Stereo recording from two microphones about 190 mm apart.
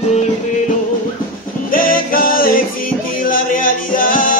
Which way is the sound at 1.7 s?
50° left (ahead or behind).